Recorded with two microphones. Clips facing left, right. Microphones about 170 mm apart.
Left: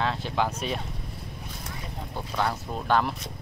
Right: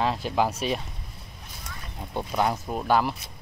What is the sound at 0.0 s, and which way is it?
Speech, 10° right (ahead or behind).